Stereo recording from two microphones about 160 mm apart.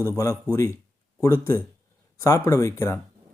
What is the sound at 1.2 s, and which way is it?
Speech, 15° left (ahead or behind).